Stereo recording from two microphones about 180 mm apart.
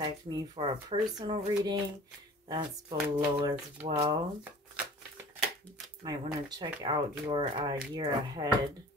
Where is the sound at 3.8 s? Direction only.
30° right (ahead or behind).